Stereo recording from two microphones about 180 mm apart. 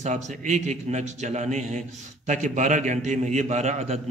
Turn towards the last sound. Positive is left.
turn(degrees=-40)  # may be behind; listen again after turning